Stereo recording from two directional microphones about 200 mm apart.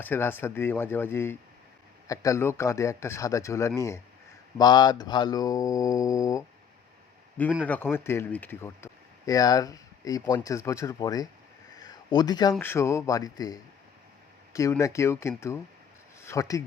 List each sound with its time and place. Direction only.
0.0 s speech: 10° left (ahead or behind)
7.6 s speech: 10° left (ahead or behind)
11.8 s a sound: 20° left (ahead or behind)
12.5 s speech: 10° left (ahead or behind)